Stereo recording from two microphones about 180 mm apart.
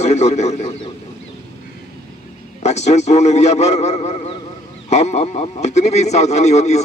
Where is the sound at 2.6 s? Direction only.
40° left (ahead or behind).